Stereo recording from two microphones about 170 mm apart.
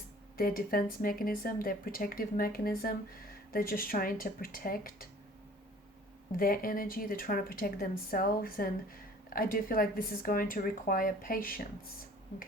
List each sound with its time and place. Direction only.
0.3 s speech: 60° left (ahead or behind)
6.3 s speech: 60° left (ahead or behind)